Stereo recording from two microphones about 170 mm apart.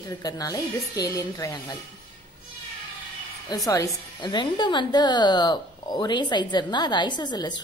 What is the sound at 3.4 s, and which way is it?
A woman's voice, 20° left (ahead or behind).